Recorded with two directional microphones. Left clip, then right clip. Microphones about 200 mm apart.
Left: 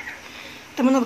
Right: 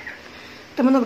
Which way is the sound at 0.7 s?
10° right (ahead or behind).